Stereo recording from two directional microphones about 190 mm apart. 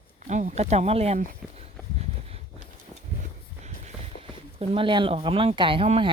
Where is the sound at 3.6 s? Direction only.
35° right (ahead or behind).